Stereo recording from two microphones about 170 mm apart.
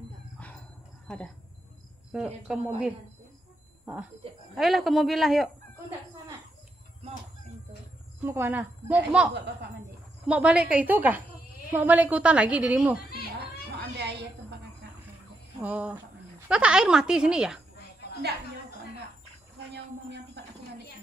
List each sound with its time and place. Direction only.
1.0 s speech: 5° left (ahead or behind)
4.6 s speech: centre (ahead or behind)
8.2 s a woman's voice: 10° right (ahead or behind)
10.2 s a woman's voice: 5° right (ahead or behind)
13.7 s cat: 80° right
15.6 s a woman's voice: 10° right (ahead or behind)
19.7 s a sound: 85° right